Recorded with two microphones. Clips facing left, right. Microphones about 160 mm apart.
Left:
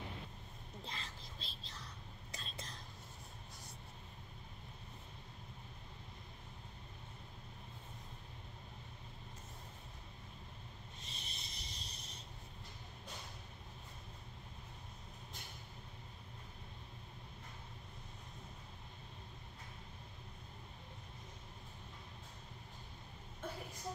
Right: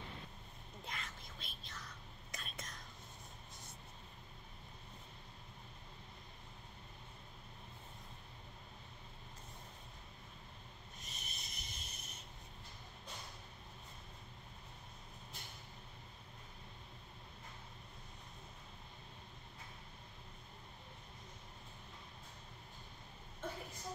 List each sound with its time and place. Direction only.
0.8 s whispering: 30° left (ahead or behind)
11.0 s rub: 30° left (ahead or behind)